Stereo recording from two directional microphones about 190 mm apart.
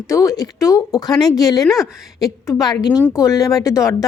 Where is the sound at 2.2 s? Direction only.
20° left (ahead or behind).